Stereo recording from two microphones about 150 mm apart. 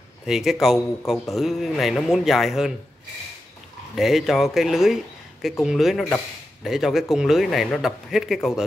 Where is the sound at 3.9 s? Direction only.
Centre (ahead or behind).